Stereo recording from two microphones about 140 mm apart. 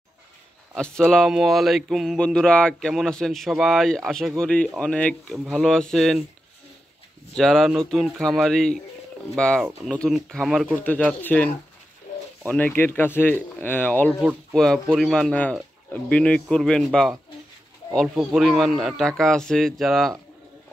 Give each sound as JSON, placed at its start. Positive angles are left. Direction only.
{"t": 0.7, "sound": "speech", "side_deg": 5}
{"t": 7.3, "sound": "speech", "side_deg": 0}
{"t": 10.8, "sound": "speech", "side_deg": 10}